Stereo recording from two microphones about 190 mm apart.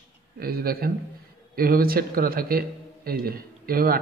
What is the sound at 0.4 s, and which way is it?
A man's voice, 55° right (ahead or behind).